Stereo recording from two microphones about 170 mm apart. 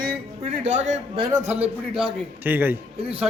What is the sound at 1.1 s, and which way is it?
Speech, 30° right (ahead or behind).